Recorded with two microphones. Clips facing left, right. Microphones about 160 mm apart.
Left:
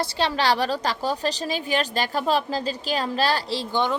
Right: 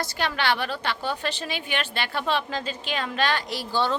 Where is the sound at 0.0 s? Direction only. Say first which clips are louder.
Left 4 dB; 30° left (ahead or behind).